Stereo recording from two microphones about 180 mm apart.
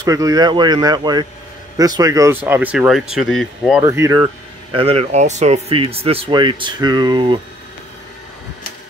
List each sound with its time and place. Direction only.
0.0 s speech: 20° right (ahead or behind); by 3.8 s centre (ahead or behind)
3.8 s speech: 15° right (ahead or behind)
4.7 s speech: 35° right (ahead or behind)